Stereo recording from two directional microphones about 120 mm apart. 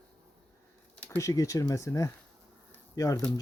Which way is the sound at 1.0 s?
20° left (ahead or behind).